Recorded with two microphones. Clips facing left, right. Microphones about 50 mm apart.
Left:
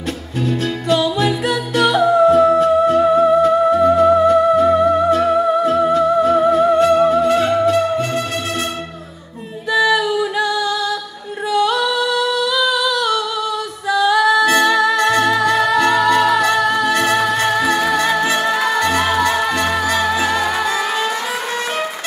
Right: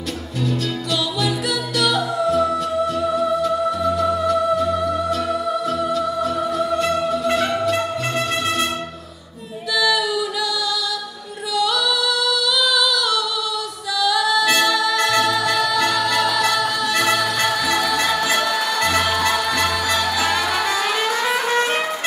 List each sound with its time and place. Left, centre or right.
0.5 s music: left
9.8 s music: left
11.5 s female singing: left
13.9 s music: left